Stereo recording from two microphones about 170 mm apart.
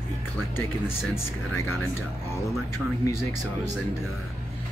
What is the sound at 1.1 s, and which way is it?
Speech, 15° left (ahead or behind).